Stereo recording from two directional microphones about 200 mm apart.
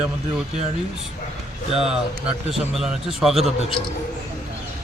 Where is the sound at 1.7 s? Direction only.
Centre (ahead or behind).